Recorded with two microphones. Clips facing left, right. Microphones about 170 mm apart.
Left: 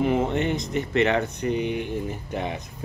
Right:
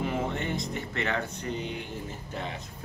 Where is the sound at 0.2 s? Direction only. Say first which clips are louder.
Left 7 dB; 20° left (ahead or behind).